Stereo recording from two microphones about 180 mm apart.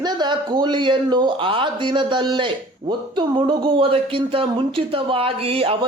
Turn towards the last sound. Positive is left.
turn(degrees=-30)  # may be behind; listen again after turning